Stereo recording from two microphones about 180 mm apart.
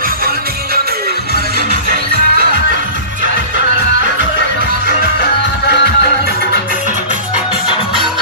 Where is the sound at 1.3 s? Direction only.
55° right (ahead or behind).